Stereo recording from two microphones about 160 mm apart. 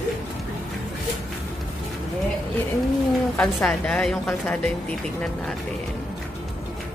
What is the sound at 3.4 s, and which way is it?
A woman's voice, 5° left (ahead or behind).